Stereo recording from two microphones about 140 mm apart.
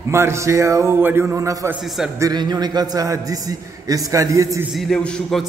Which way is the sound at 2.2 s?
30° right (ahead or behind).